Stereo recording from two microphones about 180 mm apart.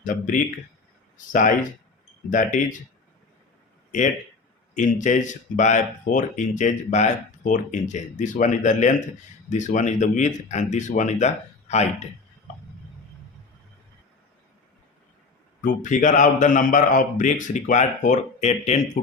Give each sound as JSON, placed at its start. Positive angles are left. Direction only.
{"t": 0.0, "sound": "speech", "side_deg": 45}
{"t": 4.7, "sound": "speech", "side_deg": 45}
{"t": 15.6, "sound": "speech", "side_deg": 45}
{"t": 19.0, "sound": "speech", "side_deg": 50}